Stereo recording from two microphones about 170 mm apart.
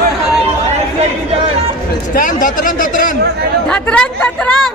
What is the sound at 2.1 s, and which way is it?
Speech, 55° left (ahead or behind).